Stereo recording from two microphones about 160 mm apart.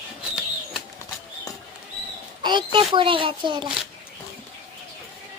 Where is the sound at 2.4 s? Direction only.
30° right (ahead or behind).